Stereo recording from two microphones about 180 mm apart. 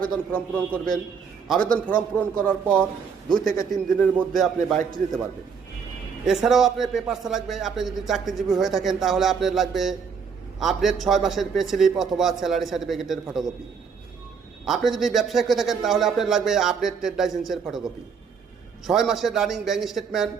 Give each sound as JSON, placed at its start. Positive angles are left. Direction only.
{"t": 0.0, "sound": "a man's voice", "side_deg": 5}
{"t": 6.2, "sound": "a man's voice", "side_deg": 0}
{"t": 14.6, "sound": "a man's voice", "side_deg": 0}
{"t": 18.9, "sound": "a man's voice", "side_deg": 0}